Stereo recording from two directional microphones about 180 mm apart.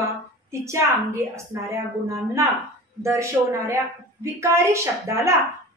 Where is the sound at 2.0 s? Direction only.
15° right (ahead or behind).